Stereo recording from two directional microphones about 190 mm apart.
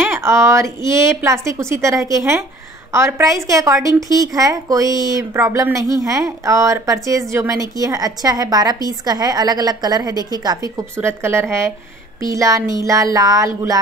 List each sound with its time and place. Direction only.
0.0 s a woman's voice: 15° right (ahead or behind)